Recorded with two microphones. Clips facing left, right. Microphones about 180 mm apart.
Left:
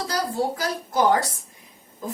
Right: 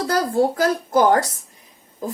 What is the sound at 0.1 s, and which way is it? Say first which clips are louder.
A woman's voice: right 7 dB; 50° right (ahead or behind).